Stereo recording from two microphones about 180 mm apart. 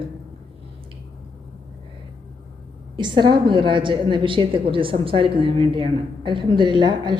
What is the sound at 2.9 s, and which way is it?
A woman's voice, 25° right (ahead or behind).